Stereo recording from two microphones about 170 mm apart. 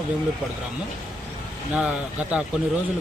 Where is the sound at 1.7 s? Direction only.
5° right (ahead or behind).